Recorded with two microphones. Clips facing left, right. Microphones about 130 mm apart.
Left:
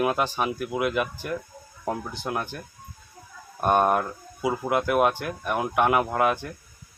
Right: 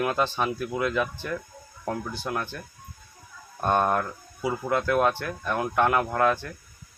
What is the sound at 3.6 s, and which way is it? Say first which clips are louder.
Speech: left 2 dB; 15° left (ahead or behind).